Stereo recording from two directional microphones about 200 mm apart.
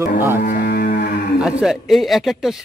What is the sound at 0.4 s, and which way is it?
Cattle, 45° left (ahead or behind).